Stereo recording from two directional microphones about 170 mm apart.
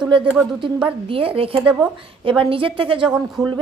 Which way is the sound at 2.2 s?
30° right (ahead or behind).